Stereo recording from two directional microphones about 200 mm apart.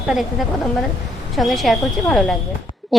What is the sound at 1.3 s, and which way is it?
A woman's voice, centre (ahead or behind).